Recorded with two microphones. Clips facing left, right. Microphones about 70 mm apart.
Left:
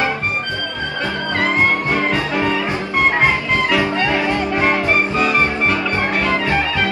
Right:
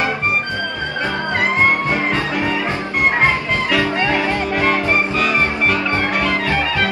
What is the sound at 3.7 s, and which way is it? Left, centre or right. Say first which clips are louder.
Music: right 3 dB; left.